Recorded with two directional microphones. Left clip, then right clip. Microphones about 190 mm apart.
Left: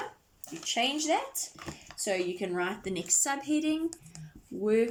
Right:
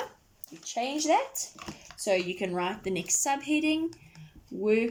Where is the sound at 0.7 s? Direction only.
15° right (ahead or behind).